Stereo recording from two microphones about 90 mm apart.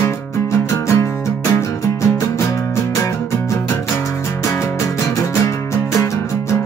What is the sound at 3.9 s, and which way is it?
Music, 30° left (ahead or behind).